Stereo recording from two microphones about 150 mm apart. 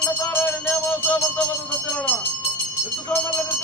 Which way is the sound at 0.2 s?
15° left (ahead or behind).